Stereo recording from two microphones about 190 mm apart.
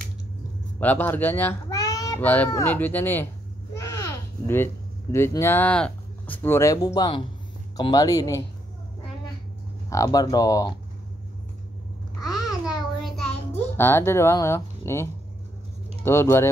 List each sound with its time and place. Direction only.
0.7 s a child's voice: 10° left (ahead or behind)
9.8 s speech: 20° left (ahead or behind)
12.6 s a sound: centre (ahead or behind)
13.7 s a child's voice: 15° left (ahead or behind)